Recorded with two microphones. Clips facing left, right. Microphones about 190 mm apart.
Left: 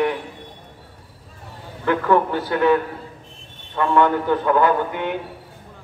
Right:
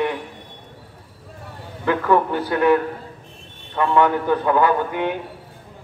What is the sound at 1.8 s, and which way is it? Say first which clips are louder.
Speech: even; 15° right (ahead or behind).